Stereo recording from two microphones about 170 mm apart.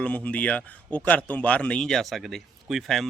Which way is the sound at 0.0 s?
10° left (ahead or behind).